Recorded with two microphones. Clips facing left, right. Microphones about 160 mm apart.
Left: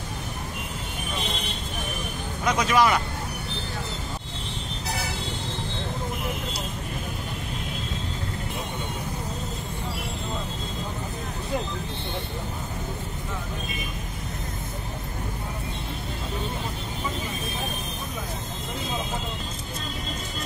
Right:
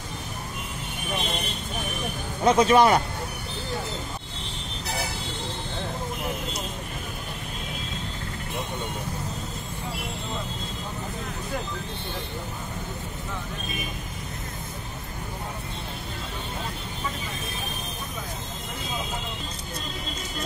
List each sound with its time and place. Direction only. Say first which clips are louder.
2.4 s speech: right 4 dB; 30° right (ahead or behind)